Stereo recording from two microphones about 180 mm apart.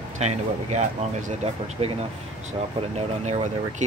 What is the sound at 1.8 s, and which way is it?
Speech, 30° right (ahead or behind).